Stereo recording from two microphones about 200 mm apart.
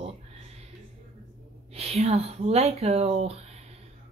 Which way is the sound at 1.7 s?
30° right (ahead or behind).